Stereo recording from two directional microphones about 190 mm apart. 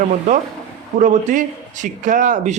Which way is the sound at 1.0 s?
45° right (ahead or behind).